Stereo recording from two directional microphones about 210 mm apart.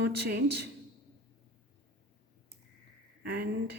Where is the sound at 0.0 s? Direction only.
55° right (ahead or behind).